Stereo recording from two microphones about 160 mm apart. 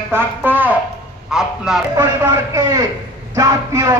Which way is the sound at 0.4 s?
10° right (ahead or behind).